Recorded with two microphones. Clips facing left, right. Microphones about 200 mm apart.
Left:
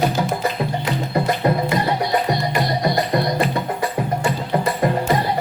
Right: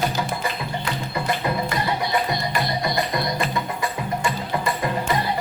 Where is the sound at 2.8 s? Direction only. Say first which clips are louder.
Left 5 dB; 35° left (ahead or behind).